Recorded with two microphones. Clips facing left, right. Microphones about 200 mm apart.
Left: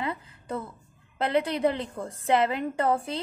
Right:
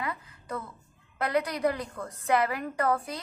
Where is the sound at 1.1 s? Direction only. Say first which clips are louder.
Left 3 dB; 25° left (ahead or behind).